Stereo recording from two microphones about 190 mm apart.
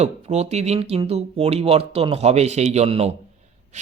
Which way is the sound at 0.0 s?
35° right (ahead or behind).